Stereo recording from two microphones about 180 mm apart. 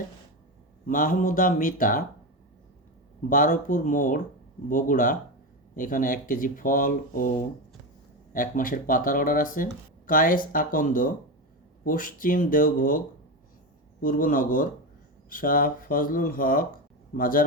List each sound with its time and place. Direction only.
0.9 s speech: 45° left (ahead or behind)
3.2 s speech: 45° left (ahead or behind)
8.3 s speech: 50° left (ahead or behind)
14.0 s speech: 50° left (ahead or behind)